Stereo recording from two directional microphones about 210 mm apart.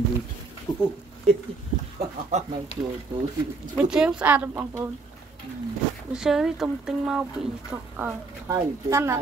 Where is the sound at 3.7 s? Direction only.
5° right (ahead or behind).